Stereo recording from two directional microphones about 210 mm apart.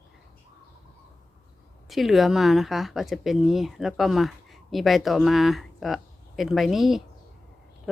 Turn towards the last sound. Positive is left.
turn(degrees=0)  # may be behind; listen again after turning